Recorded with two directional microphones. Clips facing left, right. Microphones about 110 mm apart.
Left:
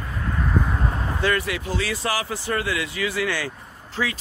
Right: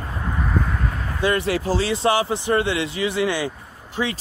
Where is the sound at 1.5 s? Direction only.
35° right (ahead or behind).